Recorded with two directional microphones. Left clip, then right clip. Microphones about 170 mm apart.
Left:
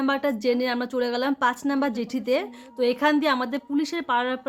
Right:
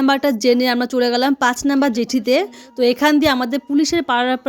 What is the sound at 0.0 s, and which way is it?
A woman's voice, 50° right (ahead or behind).